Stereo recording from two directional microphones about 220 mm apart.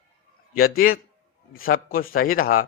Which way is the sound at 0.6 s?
40° left (ahead or behind).